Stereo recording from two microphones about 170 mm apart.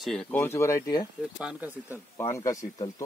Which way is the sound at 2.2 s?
20° left (ahead or behind).